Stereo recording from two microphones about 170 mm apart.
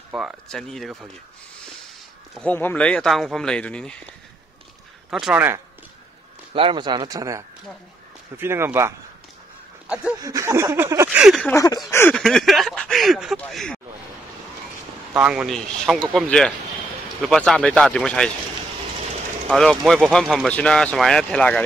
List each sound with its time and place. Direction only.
0.1 s speech: centre (ahead or behind)
2.3 s speech: 10° left (ahead or behind)
5.1 s speech: centre (ahead or behind)
6.5 s speech: 30° right (ahead or behind); by 8.9 s 15° right (ahead or behind)
10.2 s speech: 20° right (ahead or behind)
11.2 s speech: centre (ahead or behind)
11.5 s a sound: 20° left (ahead or behind)
11.9 s speech: 15° left (ahead or behind)
12.2 s speech: centre (ahead or behind)
15.1 s speech: 5° right (ahead or behind)
19.5 s speech: centre (ahead or behind)